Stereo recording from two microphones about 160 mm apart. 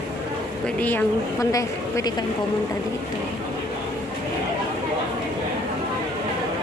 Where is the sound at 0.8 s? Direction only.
15° left (ahead or behind).